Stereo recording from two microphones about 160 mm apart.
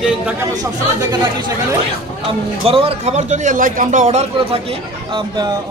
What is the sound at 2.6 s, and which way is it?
A man's voice, 35° right (ahead or behind).